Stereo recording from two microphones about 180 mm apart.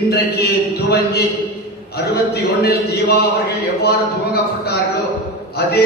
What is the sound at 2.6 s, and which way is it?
A man's voice, 60° left (ahead or behind).